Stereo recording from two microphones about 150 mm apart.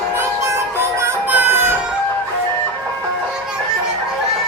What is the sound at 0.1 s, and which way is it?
Music, 15° right (ahead or behind).